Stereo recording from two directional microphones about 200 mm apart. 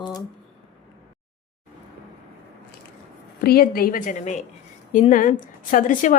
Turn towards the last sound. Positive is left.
turn(degrees=40)  # may be behind; listen again after turning